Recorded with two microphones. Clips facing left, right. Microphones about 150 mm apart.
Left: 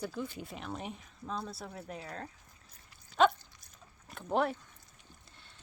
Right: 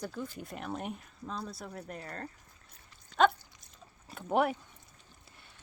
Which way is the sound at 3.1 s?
Centre (ahead or behind).